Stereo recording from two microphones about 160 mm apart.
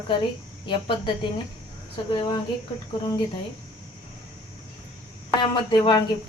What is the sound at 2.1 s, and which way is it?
Speech, 30° left (ahead or behind).